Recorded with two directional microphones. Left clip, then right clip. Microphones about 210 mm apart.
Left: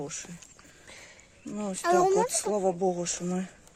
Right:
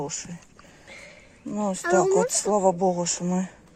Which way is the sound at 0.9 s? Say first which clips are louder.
Right 5 dB; 40° left (ahead or behind).